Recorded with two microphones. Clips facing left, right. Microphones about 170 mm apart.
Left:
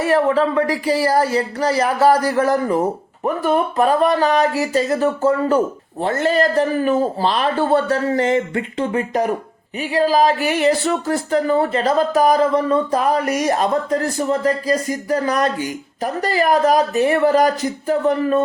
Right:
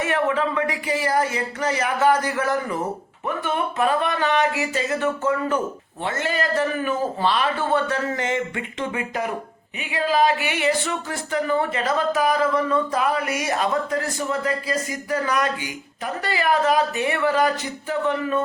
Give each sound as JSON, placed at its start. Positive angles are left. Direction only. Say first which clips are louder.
{"t": 0.0, "sound": "speech", "louder": "left 6 dB", "side_deg": 35}